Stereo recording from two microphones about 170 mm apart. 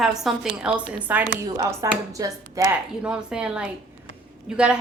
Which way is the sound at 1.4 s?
20° right (ahead or behind).